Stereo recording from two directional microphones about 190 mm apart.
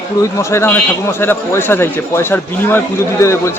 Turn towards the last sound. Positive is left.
turn(degrees=15)  # may be behind; listen again after turning